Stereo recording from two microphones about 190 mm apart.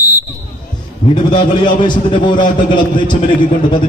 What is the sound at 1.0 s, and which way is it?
A man's voice, 25° left (ahead or behind).